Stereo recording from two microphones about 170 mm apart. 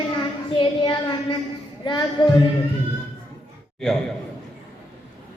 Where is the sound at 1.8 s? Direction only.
25° left (ahead or behind).